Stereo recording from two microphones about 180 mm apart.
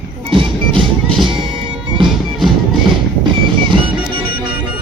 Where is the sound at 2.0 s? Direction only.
Centre (ahead or behind).